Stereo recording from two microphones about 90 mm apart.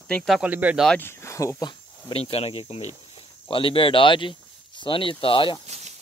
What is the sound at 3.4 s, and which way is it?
Speech, 80° left.